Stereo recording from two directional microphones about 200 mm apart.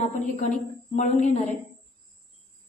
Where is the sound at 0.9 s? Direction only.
35° left (ahead or behind).